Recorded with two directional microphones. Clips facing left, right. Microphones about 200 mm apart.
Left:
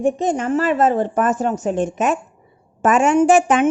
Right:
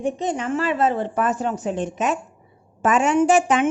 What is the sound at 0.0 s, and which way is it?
Speech, 45° left (ahead or behind).